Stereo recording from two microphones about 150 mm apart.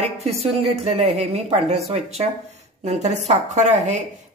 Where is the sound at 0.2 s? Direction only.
45° right (ahead or behind).